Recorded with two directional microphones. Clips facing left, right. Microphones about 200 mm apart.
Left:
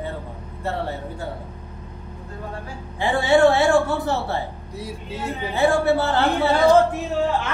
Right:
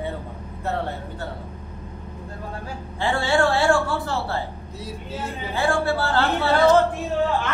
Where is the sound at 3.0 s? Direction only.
20° left (ahead or behind).